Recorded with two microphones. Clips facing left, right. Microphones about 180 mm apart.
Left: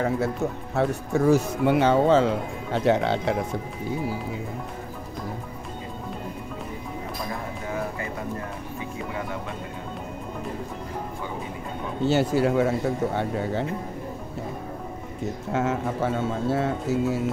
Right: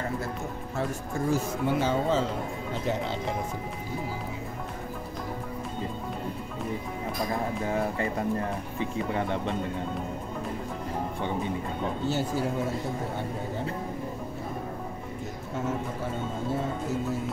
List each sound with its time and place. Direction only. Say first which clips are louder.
0.0 s speech: left 8 dB; 70° left (ahead or behind)
7.6 s speech: right 1 dB; 30° right (ahead or behind)
12.1 s speech: left 10 dB; 75° left (ahead or behind)
15.5 s speech: left 5 dB; 90° left